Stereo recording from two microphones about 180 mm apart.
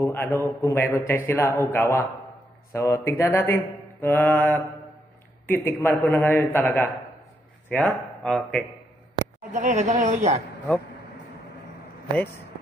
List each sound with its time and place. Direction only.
0.0 s a man's voice: 10° left (ahead or behind)
9.5 s speech: 40° right (ahead or behind)